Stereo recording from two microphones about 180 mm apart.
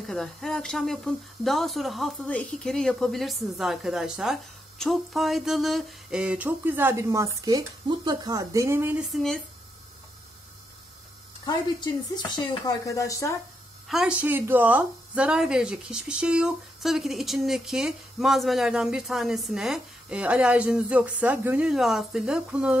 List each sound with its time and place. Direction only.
0.0 s speech: centre (ahead or behind)
11.4 s speech: 25° left (ahead or behind)
13.8 s speech: 5° right (ahead or behind)